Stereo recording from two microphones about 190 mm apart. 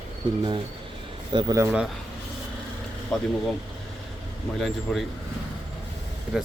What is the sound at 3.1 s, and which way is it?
Speech, centre (ahead or behind).